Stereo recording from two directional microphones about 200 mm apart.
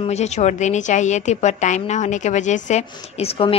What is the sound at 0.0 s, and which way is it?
A woman's voice, 35° left (ahead or behind).